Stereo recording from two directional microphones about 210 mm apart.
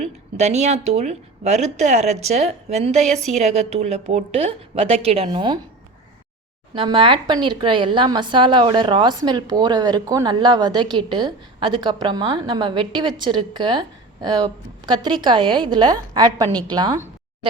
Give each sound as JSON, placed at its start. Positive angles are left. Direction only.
{"t": 0.0, "sound": "a woman's voice", "side_deg": -30}
{"t": 6.7, "sound": "a woman's voice", "side_deg": -25}